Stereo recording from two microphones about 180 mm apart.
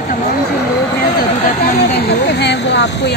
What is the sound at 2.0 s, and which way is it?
Speech, 65° left (ahead or behind).